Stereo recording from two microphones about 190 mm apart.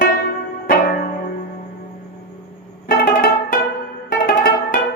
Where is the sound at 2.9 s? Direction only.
50° left (ahead or behind).